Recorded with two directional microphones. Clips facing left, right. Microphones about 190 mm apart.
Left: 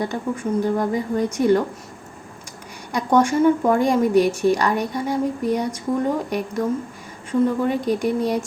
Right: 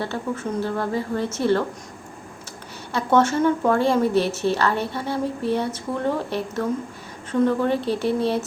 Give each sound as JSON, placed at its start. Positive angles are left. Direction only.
{"t": 0.0, "sound": "a woman's voice", "side_deg": 15}
{"t": 2.9, "sound": "a woman's voice", "side_deg": 15}